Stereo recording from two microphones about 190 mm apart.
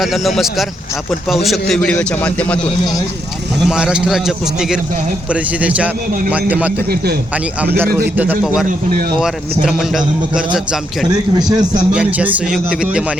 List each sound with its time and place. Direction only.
0.0 s a man's voice: centre (ahead or behind)
1.5 s a man's voice: centre (ahead or behind)
3.7 s a man's voice: 5° right (ahead or behind)
6.7 s a man's voice: 55° right (ahead or behind)
8.1 s a man's voice: 10° right (ahead or behind)
11.1 s a man's voice: 20° right (ahead or behind)
11.9 s speech: 10° right (ahead or behind)